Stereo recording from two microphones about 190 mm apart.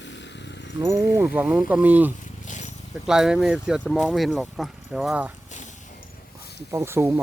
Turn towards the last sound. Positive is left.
turn(degrees=-15)  # may be behind; listen again after turning